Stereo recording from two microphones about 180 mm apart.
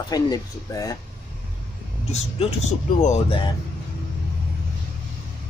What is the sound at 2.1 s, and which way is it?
Speech, 40° left (ahead or behind).